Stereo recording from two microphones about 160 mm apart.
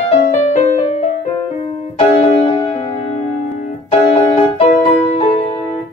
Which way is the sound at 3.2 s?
45° left (ahead or behind).